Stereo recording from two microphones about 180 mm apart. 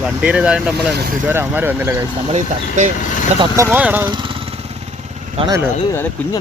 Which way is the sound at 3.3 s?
20° right (ahead or behind).